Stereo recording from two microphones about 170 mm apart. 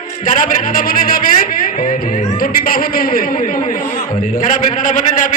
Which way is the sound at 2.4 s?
60° left (ahead or behind).